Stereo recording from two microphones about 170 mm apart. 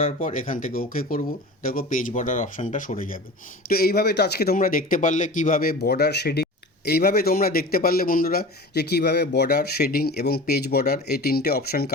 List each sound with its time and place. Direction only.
0.0 s speech: 50° left (ahead or behind)
3.7 s speech: 65° left (ahead or behind)